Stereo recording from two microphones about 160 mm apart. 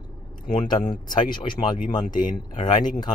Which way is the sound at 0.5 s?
25° left (ahead or behind).